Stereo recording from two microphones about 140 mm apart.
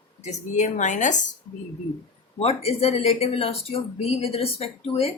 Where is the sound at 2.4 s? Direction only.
45° left (ahead or behind).